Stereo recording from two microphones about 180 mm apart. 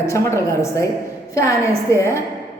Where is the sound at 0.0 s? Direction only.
15° left (ahead or behind).